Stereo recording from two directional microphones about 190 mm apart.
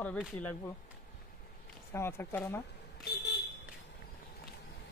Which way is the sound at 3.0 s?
60° left (ahead or behind).